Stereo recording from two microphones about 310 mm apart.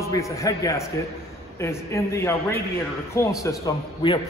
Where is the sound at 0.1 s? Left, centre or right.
Centre.